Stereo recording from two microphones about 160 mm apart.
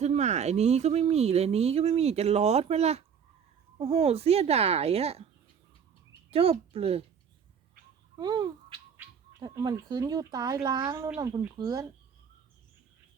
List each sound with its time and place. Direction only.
0.0 s speech: 45° right (ahead or behind)
6.3 s speech: 40° right (ahead or behind)
8.1 s babbling: 25° right (ahead or behind)
9.4 s speech: 20° right (ahead or behind)